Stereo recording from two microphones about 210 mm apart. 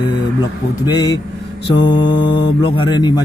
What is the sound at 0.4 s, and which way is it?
Speech, 20° left (ahead or behind).